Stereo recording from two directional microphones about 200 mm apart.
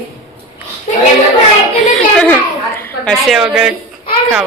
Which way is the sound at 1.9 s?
5° left (ahead or behind).